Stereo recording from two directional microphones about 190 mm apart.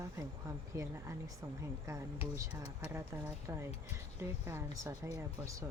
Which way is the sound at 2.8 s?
15° right (ahead or behind).